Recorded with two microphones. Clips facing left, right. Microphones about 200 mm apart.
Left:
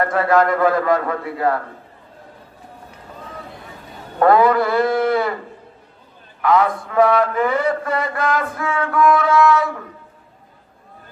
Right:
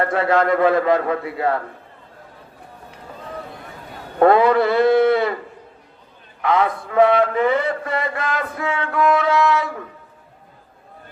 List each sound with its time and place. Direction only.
0.1 s mantra: 25° right (ahead or behind)
4.2 s mantra: 25° right (ahead or behind)
6.4 s mantra: 25° right (ahead or behind)